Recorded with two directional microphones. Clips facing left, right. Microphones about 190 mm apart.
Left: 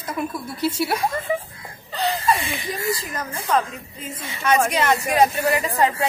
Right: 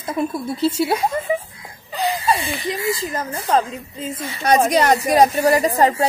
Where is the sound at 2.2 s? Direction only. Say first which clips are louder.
Right 2 dB; 30° right (ahead or behind).